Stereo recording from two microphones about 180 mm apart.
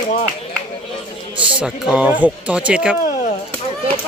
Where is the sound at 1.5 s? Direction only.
5° right (ahead or behind).